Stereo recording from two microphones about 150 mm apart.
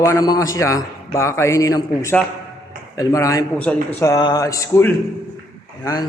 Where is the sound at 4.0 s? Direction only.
25° left (ahead or behind).